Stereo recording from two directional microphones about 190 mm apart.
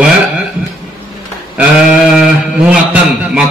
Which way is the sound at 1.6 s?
5° right (ahead or behind).